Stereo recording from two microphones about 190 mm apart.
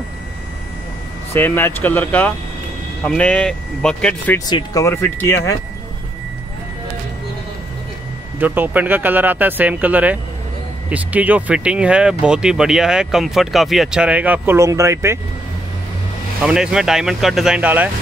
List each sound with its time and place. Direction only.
1.3 s speech: 10° left (ahead or behind)
4.5 s speech: 20° left (ahead or behind)
8.4 s speech: 10° right (ahead or behind)
16.4 s speech: 5° right (ahead or behind)